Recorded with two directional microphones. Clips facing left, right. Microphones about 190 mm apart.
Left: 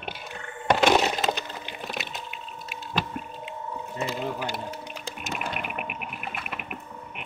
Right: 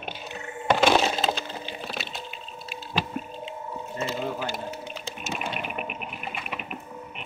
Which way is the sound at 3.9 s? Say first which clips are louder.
Right 1 dB; 15° left (ahead or behind).